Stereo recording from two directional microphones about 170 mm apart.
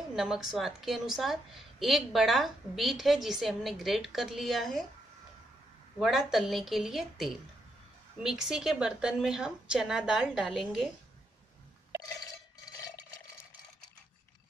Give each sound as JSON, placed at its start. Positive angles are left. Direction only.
{"t": 0.1, "sound": "a woman's voice", "side_deg": 0}
{"t": 5.9, "sound": "a woman's voice", "side_deg": 0}